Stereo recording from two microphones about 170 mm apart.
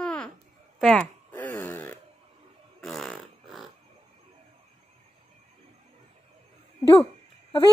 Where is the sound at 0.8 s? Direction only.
5° left (ahead or behind).